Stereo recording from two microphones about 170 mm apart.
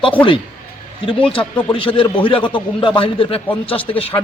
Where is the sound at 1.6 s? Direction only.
30° left (ahead or behind).